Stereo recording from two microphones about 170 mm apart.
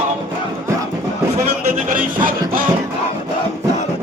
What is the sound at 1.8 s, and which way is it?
Music, 55° right (ahead or behind).